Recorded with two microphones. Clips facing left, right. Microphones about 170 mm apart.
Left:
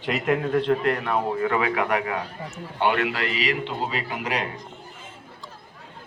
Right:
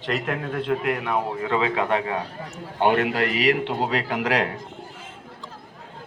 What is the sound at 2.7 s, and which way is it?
A man's voice, 45° right (ahead or behind).